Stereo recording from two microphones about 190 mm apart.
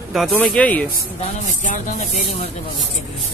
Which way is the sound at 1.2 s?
40° left (ahead or behind).